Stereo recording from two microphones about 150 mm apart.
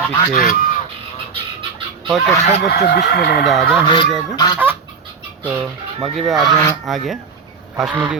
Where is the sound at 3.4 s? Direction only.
Centre (ahead or behind).